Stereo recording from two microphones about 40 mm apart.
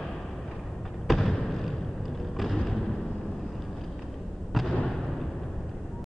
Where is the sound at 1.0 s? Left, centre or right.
Centre.